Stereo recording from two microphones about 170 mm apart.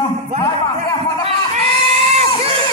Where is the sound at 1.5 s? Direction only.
40° right (ahead or behind).